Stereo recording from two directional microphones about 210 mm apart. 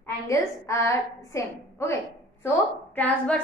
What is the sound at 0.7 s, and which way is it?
A woman's voice, 15° left (ahead or behind).